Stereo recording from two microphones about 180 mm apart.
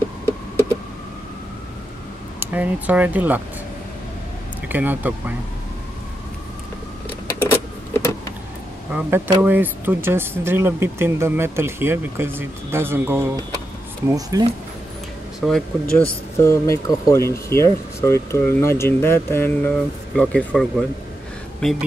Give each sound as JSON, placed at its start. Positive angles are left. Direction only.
{"t": 2.4, "sound": "speech", "side_deg": -10}
{"t": 4.6, "sound": "speech", "side_deg": -10}
{"t": 7.5, "sound": "power windows", "side_deg": 15}
{"t": 8.9, "sound": "speech", "side_deg": -10}
{"t": 15.4, "sound": "speech", "side_deg": 0}
{"t": 16.3, "sound": "speech", "side_deg": 15}